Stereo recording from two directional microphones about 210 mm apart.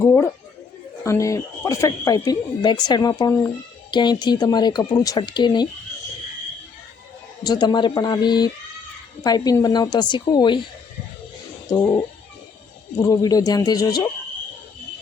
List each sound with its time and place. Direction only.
0.0 s speech: 10° left (ahead or behind)
7.4 s speech: 20° left (ahead or behind)
13.0 s speech: 15° left (ahead or behind)